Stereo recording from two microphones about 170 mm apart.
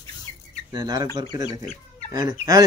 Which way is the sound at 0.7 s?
25° right (ahead or behind).